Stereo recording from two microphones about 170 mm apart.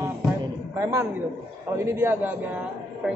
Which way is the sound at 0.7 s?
15° right (ahead or behind).